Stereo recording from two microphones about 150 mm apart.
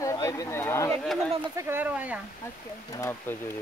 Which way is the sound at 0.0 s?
20° left (ahead or behind).